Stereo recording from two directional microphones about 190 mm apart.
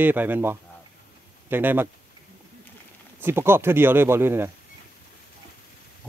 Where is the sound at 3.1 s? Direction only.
10° right (ahead or behind).